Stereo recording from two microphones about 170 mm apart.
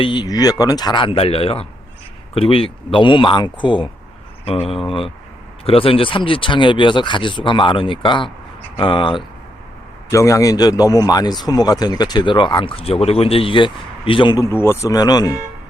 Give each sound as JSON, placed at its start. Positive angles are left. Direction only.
{"t": 0.0, "sound": "a man's voice", "side_deg": 25}
{"t": 10.1, "sound": "a man's voice", "side_deg": 20}